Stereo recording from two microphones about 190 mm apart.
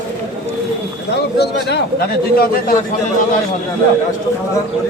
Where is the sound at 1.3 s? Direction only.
60° left (ahead or behind).